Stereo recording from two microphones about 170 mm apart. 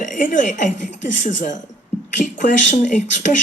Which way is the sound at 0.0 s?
50° left (ahead or behind).